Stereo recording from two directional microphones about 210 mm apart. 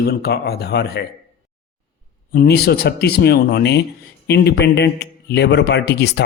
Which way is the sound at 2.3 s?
50° left (ahead or behind).